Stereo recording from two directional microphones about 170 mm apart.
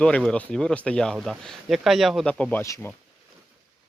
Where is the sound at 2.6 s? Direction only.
15° left (ahead or behind).